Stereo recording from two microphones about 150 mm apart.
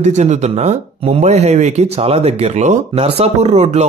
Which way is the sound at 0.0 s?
50° right (ahead or behind).